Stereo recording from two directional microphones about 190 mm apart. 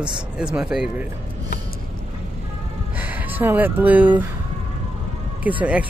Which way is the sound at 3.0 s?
10° right (ahead or behind).